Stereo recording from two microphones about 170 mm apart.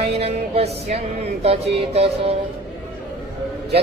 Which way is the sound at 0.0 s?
35° right (ahead or behind).